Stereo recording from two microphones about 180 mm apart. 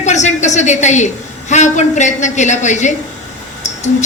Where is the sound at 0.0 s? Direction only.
40° left (ahead or behind).